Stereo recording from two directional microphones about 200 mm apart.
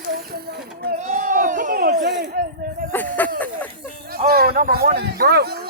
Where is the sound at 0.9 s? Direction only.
35° right (ahead or behind).